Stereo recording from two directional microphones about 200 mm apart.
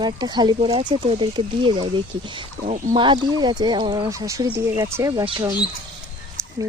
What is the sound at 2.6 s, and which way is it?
Speech, 40° right (ahead or behind).